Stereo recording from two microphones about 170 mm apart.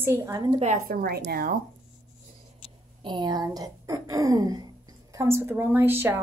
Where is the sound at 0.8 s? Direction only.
65° right (ahead or behind).